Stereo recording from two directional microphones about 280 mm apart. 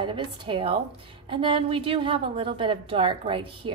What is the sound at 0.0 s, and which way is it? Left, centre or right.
A woman's voice, centre.